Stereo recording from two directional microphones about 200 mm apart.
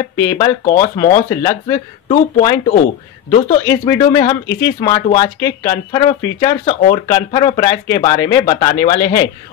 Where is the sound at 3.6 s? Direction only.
15° left (ahead or behind).